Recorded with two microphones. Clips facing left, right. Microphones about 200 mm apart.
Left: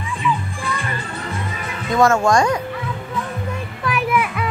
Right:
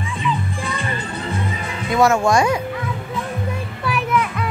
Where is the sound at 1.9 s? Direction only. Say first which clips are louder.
Even; 10° right (ahead or behind).